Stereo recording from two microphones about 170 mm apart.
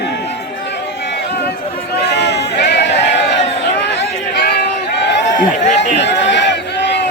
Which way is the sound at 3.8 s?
90° left.